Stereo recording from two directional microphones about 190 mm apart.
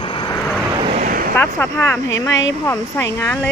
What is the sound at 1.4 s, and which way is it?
Speech, 10° left (ahead or behind).